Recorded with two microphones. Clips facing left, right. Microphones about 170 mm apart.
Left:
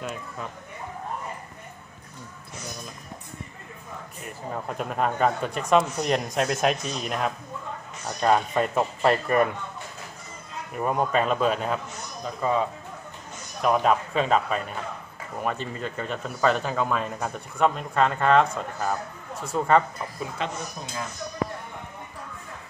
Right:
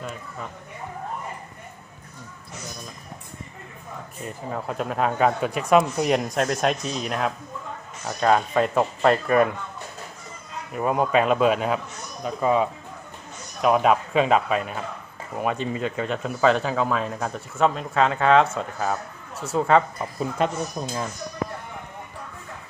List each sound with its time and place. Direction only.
4.5 s speech: centre (ahead or behind)
10.7 s speech: 5° right (ahead or behind)
20.4 s speech: 50° right (ahead or behind)